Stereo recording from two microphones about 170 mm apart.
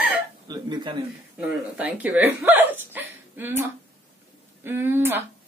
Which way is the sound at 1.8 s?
10° right (ahead or behind).